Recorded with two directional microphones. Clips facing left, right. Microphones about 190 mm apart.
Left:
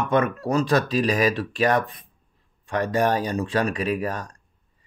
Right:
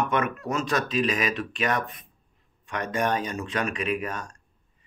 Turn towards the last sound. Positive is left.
turn(degrees=35)  # may be behind; listen again after turning